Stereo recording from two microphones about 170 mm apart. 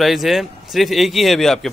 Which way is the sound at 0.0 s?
Centre (ahead or behind).